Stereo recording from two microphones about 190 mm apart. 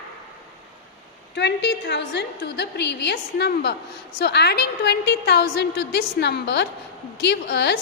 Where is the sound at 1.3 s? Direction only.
70° left (ahead or behind).